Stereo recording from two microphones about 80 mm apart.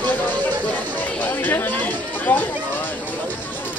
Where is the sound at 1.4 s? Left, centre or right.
Left.